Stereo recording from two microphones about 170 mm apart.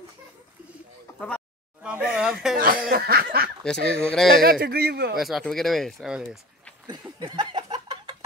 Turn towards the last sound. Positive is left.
turn(degrees=-30)  # may be behind; listen again after turning